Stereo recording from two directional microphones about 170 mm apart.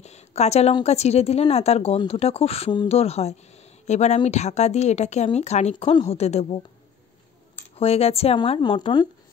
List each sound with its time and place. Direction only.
0.0 s a sound: 40° left (ahead or behind)
0.8 s speech: 40° left (ahead or behind)
7.7 s speech: 35° left (ahead or behind)